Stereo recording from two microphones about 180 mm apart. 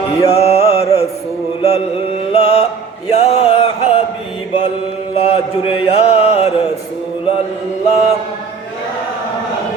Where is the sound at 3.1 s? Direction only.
35° left (ahead or behind).